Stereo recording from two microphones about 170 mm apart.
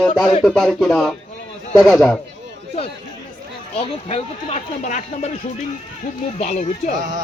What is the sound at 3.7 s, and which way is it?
Speech, 35° left (ahead or behind).